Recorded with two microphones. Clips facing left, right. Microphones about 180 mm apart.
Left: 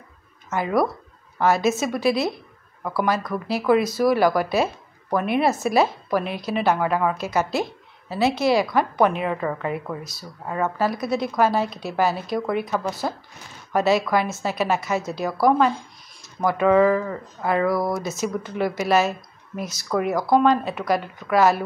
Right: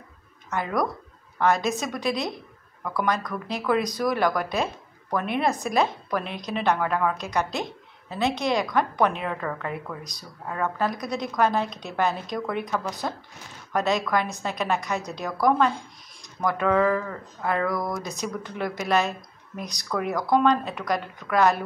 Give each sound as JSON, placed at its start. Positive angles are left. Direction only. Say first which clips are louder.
{"t": 0.5, "sound": "a woman's voice", "louder": "left 5 dB", "side_deg": 5}